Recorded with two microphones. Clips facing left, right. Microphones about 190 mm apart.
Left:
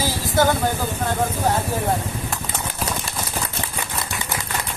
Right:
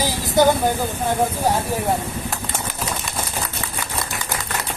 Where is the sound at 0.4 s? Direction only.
15° right (ahead or behind).